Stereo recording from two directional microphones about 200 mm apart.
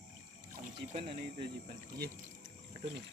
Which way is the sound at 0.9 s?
30° right (ahead or behind).